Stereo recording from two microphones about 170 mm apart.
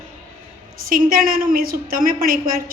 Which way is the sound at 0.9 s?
55° right (ahead or behind).